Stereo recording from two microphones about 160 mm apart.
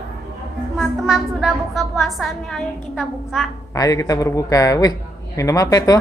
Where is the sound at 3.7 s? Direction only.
20° left (ahead or behind).